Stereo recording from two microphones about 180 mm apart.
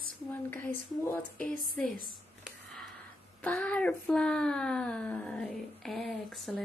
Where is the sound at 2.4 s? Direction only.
Centre (ahead or behind).